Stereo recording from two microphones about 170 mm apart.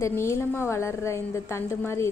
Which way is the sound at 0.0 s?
15° left (ahead or behind).